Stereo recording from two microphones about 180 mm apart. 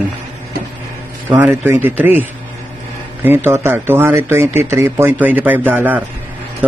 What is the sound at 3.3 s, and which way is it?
A man's voice, 10° right (ahead or behind).